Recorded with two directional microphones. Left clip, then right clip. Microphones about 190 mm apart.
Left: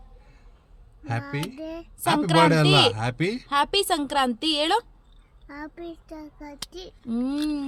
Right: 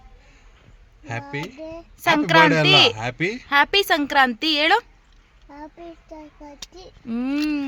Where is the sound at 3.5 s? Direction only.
20° right (ahead or behind).